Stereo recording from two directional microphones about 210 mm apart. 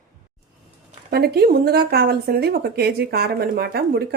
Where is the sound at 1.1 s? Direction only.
50° right (ahead or behind).